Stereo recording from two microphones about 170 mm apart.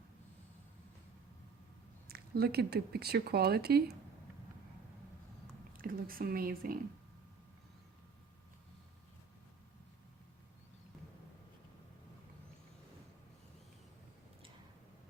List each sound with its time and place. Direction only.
2.0 s speech: 65° right (ahead or behind)
5.7 s a woman's voice: 55° right (ahead or behind)